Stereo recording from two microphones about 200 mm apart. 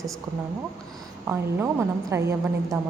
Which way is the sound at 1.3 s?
10° right (ahead or behind).